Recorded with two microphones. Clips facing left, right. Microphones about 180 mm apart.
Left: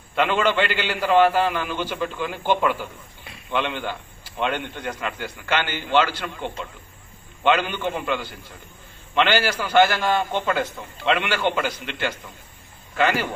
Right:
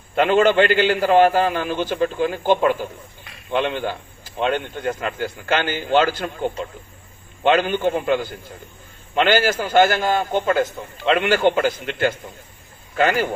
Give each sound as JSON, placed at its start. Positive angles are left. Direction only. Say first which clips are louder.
{"t": 0.2, "sound": "a man's voice", "louder": "right 6 dB", "side_deg": -45}